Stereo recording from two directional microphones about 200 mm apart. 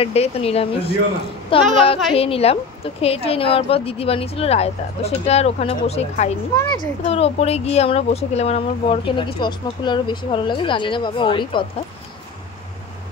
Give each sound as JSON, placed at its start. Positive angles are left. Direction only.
{"t": 0.0, "sound": "speech", "side_deg": 30}
{"t": 6.5, "sound": "speech", "side_deg": 15}
{"t": 7.0, "sound": "speech", "side_deg": 30}